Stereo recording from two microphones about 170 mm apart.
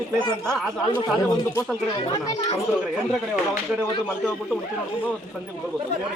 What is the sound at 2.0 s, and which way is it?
Speech, 30° left (ahead or behind).